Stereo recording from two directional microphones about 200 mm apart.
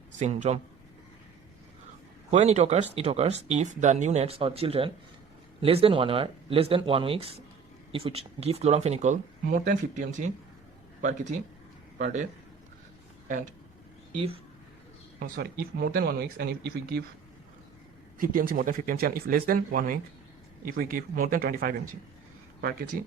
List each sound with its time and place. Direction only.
0.2 s speech: 35° right (ahead or behind)
2.3 s speech: 35° right (ahead or behind)
15.2 s speech: 50° right (ahead or behind)
18.2 s speech: 45° right (ahead or behind)
22.9 s speech: 45° right (ahead or behind)